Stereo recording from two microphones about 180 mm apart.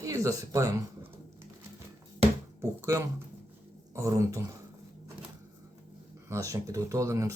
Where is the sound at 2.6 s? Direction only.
15° right (ahead or behind).